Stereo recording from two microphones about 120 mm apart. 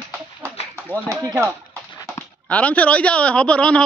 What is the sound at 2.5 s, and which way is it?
Speech, 10° left (ahead or behind).